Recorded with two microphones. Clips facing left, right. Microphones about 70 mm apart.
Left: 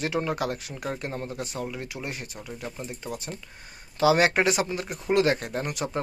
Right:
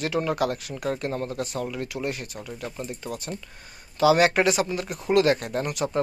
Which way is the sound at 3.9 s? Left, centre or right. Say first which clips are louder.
Right 2 dB; left.